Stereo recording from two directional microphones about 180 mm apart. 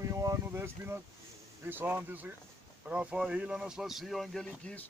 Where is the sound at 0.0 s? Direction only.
20° right (ahead or behind).